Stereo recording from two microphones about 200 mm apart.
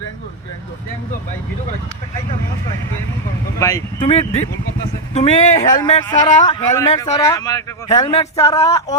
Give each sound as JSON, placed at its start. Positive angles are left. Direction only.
{"t": 3.6, "sound": "speech", "side_deg": 15}
{"t": 5.1, "sound": "speech", "side_deg": 30}